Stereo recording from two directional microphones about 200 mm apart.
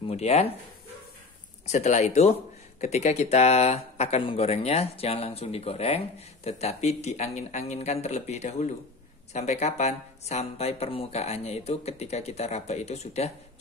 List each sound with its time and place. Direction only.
0.0 s speech: 35° left (ahead or behind)
1.7 s speech: 35° left (ahead or behind)